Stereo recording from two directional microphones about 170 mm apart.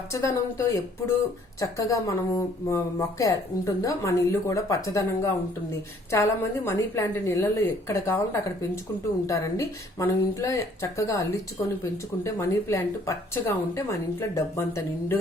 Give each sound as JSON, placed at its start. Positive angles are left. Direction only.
{"t": 0.1, "sound": "speech", "side_deg": 15}